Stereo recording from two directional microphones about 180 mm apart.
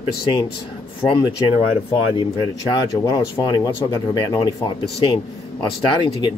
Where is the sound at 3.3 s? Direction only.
20° left (ahead or behind).